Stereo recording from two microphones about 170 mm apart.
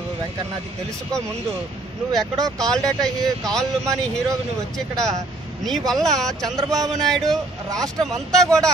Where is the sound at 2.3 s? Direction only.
20° right (ahead or behind).